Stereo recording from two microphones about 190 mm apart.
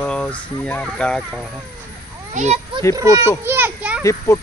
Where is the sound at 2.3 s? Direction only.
35° right (ahead or behind).